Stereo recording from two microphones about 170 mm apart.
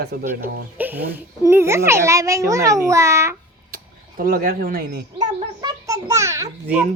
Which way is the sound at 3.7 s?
60° right (ahead or behind).